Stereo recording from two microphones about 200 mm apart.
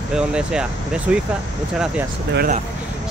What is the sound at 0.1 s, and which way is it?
Speech, 5° right (ahead or behind).